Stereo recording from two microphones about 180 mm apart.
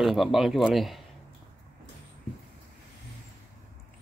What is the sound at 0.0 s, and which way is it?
Speech, centre (ahead or behind).